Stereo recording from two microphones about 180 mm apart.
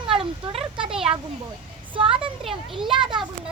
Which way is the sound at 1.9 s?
30° right (ahead or behind).